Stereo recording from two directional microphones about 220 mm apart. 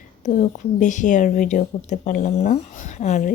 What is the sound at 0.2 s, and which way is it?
A woman's voice, 30° left (ahead or behind).